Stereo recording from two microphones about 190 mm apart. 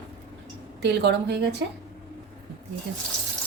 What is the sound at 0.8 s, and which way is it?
Speech, 65° right (ahead or behind).